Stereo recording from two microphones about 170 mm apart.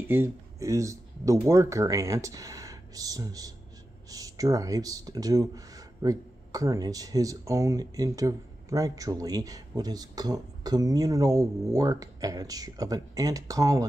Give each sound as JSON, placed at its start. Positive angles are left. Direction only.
{"t": 0.0, "sound": "speech", "side_deg": -15}